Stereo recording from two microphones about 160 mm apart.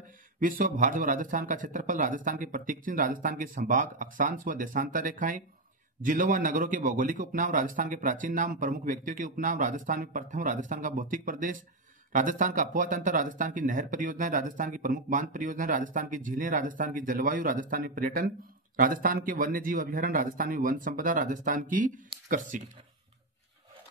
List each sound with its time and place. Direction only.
0.4 s speech: 60° right (ahead or behind)